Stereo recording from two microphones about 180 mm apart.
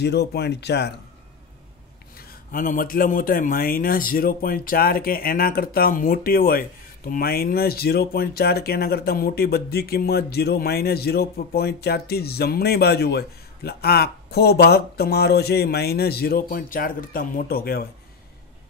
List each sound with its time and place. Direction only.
0.0 s speech: 65° left (ahead or behind)
2.1 s a man's voice: 50° left (ahead or behind)